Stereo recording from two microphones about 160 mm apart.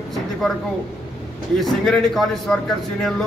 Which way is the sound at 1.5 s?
Centre (ahead or behind).